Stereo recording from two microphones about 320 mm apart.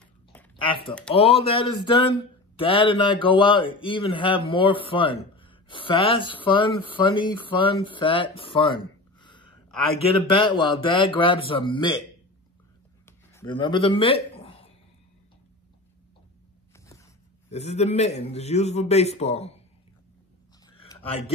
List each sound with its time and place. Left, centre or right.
0.6 s speech: centre
13.3 s a man's voice: centre
17.5 s a man's voice: centre
20.8 s a sound: centre